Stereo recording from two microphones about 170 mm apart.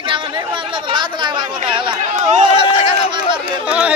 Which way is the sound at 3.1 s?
30° right (ahead or behind).